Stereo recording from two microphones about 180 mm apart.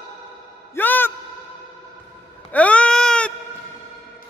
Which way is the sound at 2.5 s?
5° left (ahead or behind).